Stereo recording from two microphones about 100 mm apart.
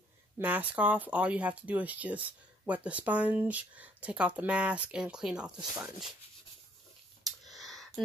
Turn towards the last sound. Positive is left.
turn(degrees=0)  # may be behind; listen again after turning